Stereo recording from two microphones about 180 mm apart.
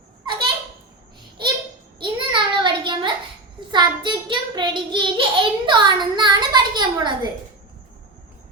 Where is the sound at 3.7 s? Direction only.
25° right (ahead or behind).